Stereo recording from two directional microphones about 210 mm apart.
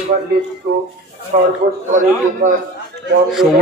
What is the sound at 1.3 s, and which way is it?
Speech, 40° right (ahead or behind).